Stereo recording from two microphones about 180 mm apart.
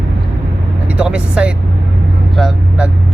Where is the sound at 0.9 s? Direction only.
5° right (ahead or behind).